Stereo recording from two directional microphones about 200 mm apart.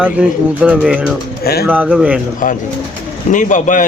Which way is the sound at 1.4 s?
50° left (ahead or behind).